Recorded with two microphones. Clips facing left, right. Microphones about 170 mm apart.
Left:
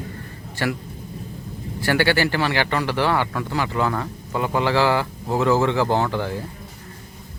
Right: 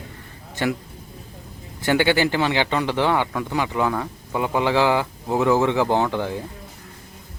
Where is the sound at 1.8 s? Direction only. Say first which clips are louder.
Right 1 dB; 20° right (ahead or behind).